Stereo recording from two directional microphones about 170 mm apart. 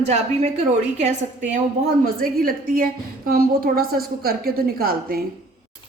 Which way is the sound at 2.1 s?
60° right (ahead or behind).